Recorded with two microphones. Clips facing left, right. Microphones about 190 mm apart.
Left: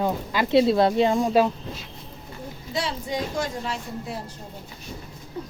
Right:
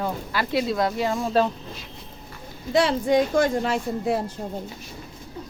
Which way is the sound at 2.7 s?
55° right (ahead or behind).